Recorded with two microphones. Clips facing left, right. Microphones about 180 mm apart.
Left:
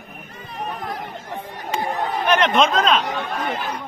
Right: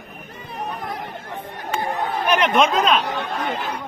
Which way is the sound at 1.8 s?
15° left (ahead or behind).